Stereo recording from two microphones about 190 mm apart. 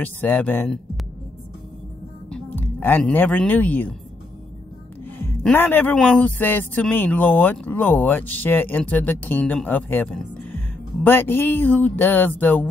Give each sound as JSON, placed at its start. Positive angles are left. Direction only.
{"t": 0.0, "sound": "a man's voice", "side_deg": 10}
{"t": 2.2, "sound": "speech", "side_deg": 5}
{"t": 5.2, "sound": "a man's voice", "side_deg": 10}